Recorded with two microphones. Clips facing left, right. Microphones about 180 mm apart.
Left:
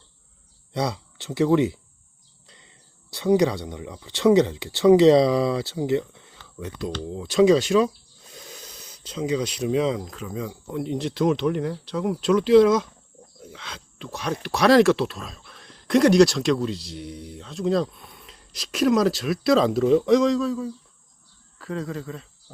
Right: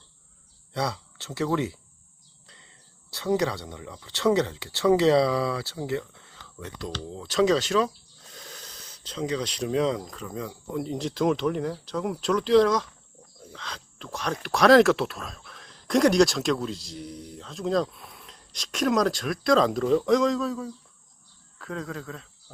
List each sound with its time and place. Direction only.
0.7 s speech: 15° left (ahead or behind)